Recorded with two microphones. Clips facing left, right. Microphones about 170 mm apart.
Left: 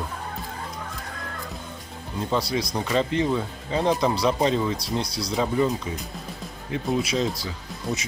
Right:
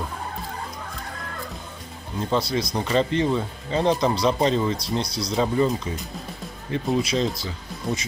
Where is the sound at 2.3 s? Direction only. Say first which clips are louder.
Right 2 dB; 10° left (ahead or behind).